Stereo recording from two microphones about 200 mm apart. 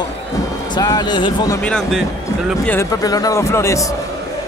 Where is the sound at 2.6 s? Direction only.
15° left (ahead or behind).